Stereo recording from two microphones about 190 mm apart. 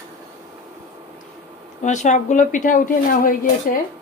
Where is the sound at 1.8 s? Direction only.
40° left (ahead or behind).